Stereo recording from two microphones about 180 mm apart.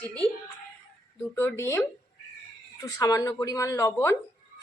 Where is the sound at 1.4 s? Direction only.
15° left (ahead or behind).